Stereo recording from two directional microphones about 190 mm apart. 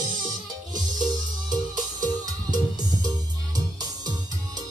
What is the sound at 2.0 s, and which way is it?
Music, 20° right (ahead or behind).